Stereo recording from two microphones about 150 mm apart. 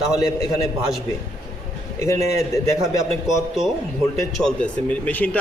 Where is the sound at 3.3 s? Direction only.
Centre (ahead or behind).